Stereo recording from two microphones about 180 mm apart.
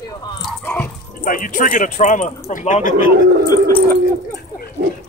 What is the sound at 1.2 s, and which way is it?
A man's voice, 50° left (ahead or behind).